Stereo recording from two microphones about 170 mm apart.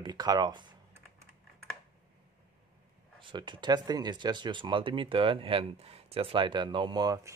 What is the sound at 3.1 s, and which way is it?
Speech, 30° right (ahead or behind).